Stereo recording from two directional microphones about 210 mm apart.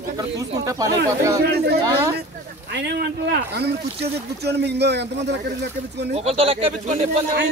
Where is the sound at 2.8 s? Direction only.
50° right (ahead or behind).